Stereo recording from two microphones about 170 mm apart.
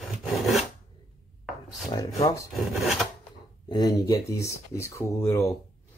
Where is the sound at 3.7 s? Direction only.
25° left (ahead or behind).